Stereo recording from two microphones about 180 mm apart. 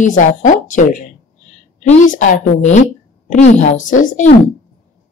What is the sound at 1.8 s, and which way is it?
A woman's voice, 45° left (ahead or behind).